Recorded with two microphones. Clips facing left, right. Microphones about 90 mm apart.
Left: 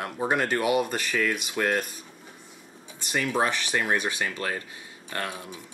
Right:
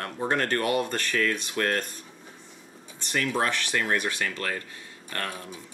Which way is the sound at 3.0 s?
15° left (ahead or behind).